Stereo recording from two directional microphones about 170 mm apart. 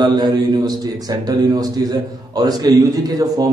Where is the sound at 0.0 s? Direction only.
25° right (ahead or behind).